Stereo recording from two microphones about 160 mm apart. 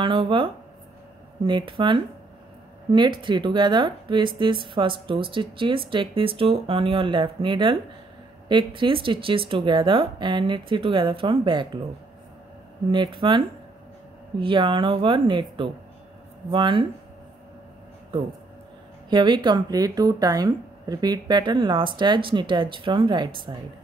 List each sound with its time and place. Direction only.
0.0 s speech: 35° right (ahead or behind)
12.9 s speech: 30° right (ahead or behind)
14.4 s speech: 30° right (ahead or behind)
19.0 s speech: 30° right (ahead or behind)